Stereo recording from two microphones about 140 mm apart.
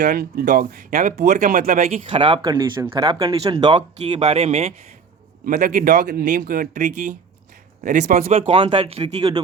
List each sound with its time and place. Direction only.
0.0 s speech: 90° right
2.0 s speech: 40° right (ahead or behind)
4.0 s speech: 50° right (ahead or behind)
5.5 s speech: 90° right; by 8.3 s 75° right (ahead or behind)
8.3 s speech: 40° right (ahead or behind)